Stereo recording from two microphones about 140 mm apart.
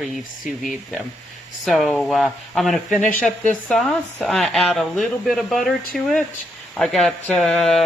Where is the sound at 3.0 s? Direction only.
65° left (ahead or behind).